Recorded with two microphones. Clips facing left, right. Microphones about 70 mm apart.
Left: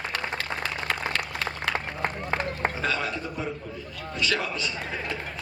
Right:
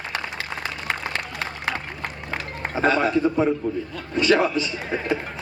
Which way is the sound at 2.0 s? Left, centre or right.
Left.